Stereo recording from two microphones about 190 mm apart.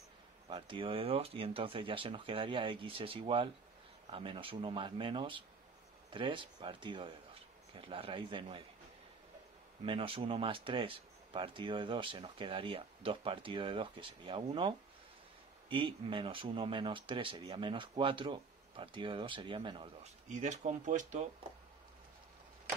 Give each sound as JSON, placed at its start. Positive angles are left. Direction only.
{"t": 0.5, "sound": "speech", "side_deg": -25}
{"t": 9.8, "sound": "speech", "side_deg": -30}
{"t": 15.7, "sound": "speech", "side_deg": -25}